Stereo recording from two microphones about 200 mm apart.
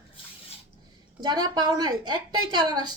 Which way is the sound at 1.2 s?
20° right (ahead or behind).